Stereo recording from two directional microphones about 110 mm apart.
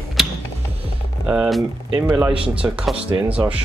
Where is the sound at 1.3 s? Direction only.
5° right (ahead or behind).